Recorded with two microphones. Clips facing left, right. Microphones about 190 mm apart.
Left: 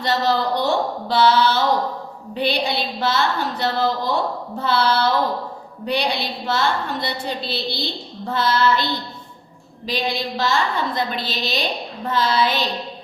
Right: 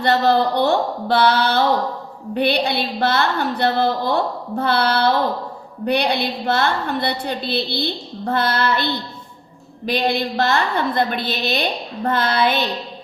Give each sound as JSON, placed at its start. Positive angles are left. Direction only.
{"t": 0.0, "sound": "a woman's voice", "side_deg": -60}